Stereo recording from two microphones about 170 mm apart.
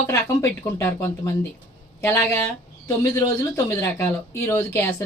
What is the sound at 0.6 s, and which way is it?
Speech, 15° left (ahead or behind).